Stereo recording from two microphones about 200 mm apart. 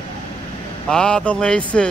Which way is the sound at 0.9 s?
5° left (ahead or behind).